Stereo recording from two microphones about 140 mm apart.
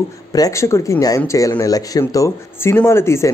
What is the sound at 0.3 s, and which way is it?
Speech, 25° left (ahead or behind).